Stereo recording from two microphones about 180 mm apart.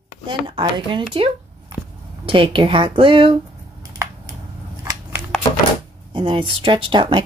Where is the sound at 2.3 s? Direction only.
30° right (ahead or behind).